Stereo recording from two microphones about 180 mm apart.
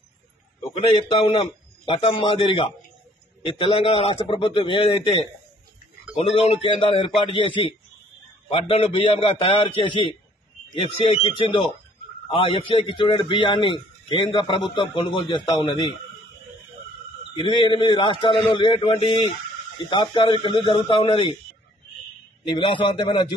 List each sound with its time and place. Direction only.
0.7 s a man's voice: 30° left (ahead or behind)
17.4 s a man's voice: 25° left (ahead or behind)
22.6 s a man's voice: 30° left (ahead or behind)